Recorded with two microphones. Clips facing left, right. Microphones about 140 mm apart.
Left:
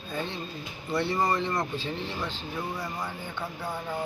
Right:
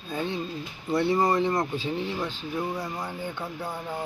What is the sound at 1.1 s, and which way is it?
Speech, 20° right (ahead or behind).